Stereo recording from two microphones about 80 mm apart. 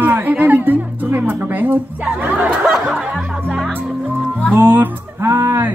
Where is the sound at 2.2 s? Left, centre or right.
Centre.